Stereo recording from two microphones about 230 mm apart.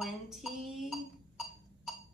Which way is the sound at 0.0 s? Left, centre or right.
Centre.